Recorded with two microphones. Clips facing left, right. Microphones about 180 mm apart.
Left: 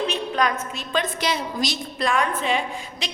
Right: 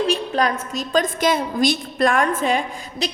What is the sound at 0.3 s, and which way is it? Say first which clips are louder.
A woman's voice: right 3 dB; 40° right (ahead or behind).